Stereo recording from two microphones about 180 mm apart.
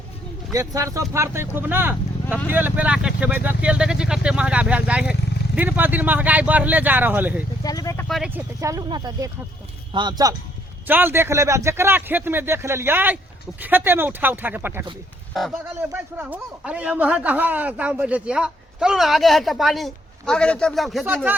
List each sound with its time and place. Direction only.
0.5 s speech: 20° right (ahead or behind)
7.6 s speech: 20° left (ahead or behind)
8.0 s speech: centre (ahead or behind)
8.4 s speech: 20° right (ahead or behind)
10.8 s speech: 10° right (ahead or behind)
15.9 s speech: 10° right (ahead or behind)